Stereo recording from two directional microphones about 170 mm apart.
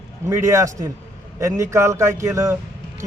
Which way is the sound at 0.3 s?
15° right (ahead or behind).